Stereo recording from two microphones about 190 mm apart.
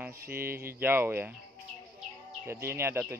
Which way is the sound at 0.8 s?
10° right (ahead or behind).